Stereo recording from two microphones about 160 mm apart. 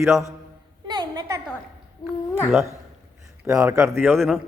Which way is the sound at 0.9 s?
25° right (ahead or behind).